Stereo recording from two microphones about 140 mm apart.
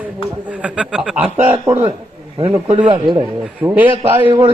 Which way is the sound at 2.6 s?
40° right (ahead or behind).